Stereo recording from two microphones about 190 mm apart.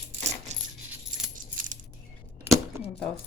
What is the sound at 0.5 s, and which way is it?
Coin, 40° right (ahead or behind).